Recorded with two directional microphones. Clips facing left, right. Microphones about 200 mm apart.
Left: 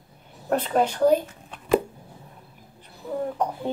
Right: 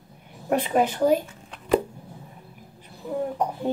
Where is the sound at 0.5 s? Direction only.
10° right (ahead or behind).